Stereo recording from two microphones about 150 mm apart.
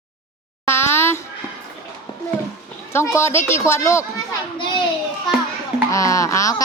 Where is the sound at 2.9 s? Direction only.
15° left (ahead or behind).